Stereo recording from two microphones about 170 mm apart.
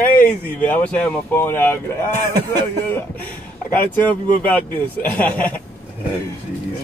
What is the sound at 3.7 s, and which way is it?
Speech, 10° left (ahead or behind).